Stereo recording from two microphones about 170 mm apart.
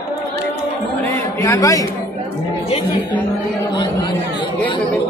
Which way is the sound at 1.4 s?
20° left (ahead or behind).